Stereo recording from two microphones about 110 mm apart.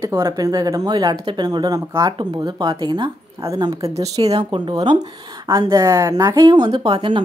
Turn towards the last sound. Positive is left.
turn(degrees=-50)  # may be behind; listen again after turning